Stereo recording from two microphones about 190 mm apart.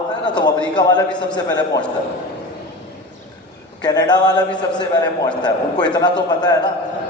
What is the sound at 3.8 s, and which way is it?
A man's voice, 20° left (ahead or behind).